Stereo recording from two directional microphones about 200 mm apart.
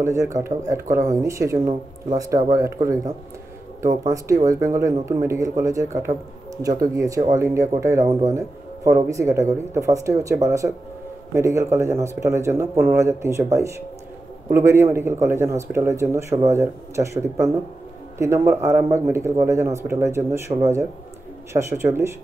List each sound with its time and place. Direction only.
0.0 s speech: 15° right (ahead or behind)
4.5 s speech: 15° right (ahead or behind)